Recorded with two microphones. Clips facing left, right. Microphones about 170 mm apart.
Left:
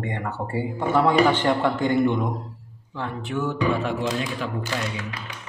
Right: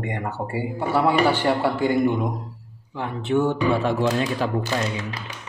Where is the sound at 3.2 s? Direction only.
30° right (ahead or behind).